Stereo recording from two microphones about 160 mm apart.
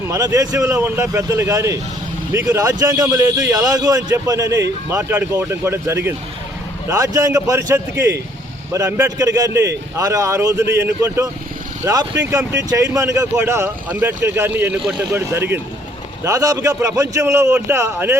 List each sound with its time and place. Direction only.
0.1 s a man's voice: 20° right (ahead or behind); by 15.2 s 5° right (ahead or behind)
15.2 s a man's voice: 15° right (ahead or behind)